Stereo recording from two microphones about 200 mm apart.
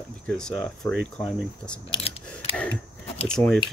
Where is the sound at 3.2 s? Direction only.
5° left (ahead or behind).